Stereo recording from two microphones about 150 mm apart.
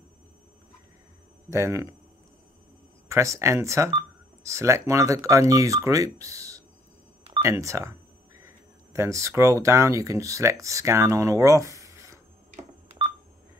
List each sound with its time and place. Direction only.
1.5 s speech: 20° right (ahead or behind)
3.1 s speech: 20° right (ahead or behind)
12.8 s telephone dialing: 40° right (ahead or behind)